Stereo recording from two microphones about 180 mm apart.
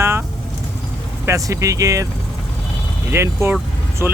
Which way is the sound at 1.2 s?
15° right (ahead or behind).